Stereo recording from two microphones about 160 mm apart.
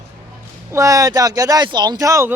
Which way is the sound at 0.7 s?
20° right (ahead or behind).